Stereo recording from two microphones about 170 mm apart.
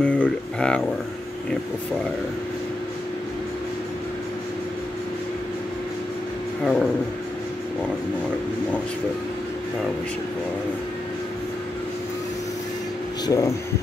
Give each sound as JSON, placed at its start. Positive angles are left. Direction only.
{"t": 0.0, "sound": "a sound", "side_deg": 5}
{"t": 6.6, "sound": "speech", "side_deg": 0}
{"t": 13.2, "sound": "speech", "side_deg": 20}